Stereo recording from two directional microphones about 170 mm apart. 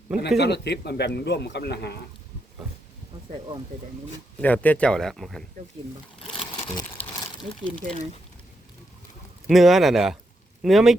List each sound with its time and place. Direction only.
0.3 s a man's voice: 80° left
4.4 s speech: 10° left (ahead or behind)
6.2 s sewing machine: 30° left (ahead or behind)
6.7 s a sound: 20° left (ahead or behind)
7.3 s speech: 5° left (ahead or behind)
9.5 s speech: centre (ahead or behind)